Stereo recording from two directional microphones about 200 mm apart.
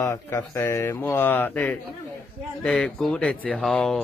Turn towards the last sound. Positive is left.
turn(degrees=0)  # may be behind; listen again after turning